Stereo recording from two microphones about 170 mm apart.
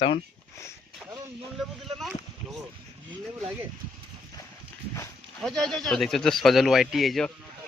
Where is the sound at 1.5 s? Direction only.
Centre (ahead or behind).